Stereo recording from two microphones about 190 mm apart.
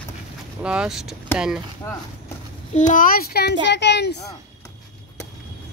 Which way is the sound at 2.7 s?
40° left (ahead or behind).